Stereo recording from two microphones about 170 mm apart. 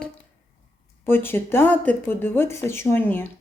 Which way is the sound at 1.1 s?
15° left (ahead or behind).